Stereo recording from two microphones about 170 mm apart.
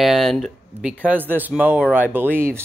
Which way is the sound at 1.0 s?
10° right (ahead or behind).